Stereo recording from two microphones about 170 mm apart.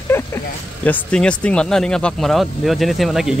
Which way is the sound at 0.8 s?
5° left (ahead or behind).